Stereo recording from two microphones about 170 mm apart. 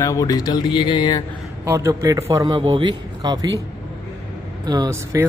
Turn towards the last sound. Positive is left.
turn(degrees=-15)  # may be behind; listen again after turning